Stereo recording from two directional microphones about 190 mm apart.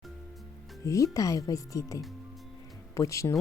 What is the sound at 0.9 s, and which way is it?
A woman's voice, 15° left (ahead or behind).